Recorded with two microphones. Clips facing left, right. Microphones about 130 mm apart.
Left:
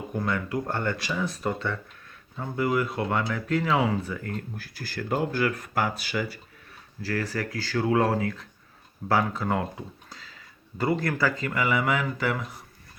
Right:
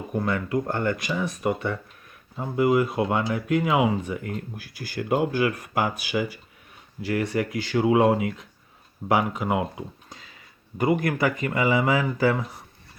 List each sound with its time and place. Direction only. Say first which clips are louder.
0.1 s speech: right 4 dB; 25° right (ahead or behind)